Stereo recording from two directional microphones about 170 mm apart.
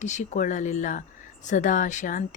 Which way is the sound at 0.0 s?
45° left (ahead or behind).